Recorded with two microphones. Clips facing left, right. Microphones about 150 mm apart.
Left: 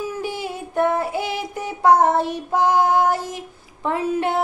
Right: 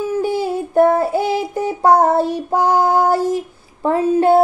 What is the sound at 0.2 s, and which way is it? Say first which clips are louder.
Child singing: right 9 dB; 35° right (ahead or behind).